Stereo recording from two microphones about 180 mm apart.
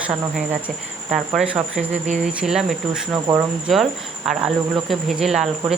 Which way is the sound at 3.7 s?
Centre (ahead or behind).